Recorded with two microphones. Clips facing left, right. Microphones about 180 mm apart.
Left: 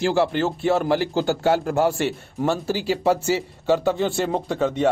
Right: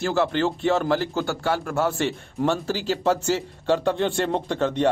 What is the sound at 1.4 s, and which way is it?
Speech, 25° left (ahead or behind).